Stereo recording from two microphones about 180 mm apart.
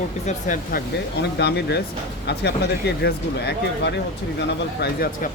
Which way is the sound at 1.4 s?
70° left (ahead or behind).